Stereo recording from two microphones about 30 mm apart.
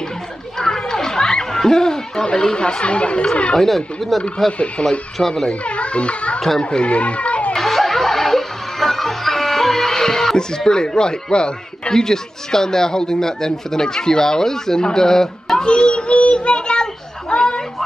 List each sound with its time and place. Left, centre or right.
0.6 s a sound: centre
2.2 s speech: left
3.5 s speech: centre
4.5 s a child's voice: left
7.5 s music: centre
10.3 s speech: left
12.0 s speech: centre
15.5 s speech: left
17.3 s a sound: left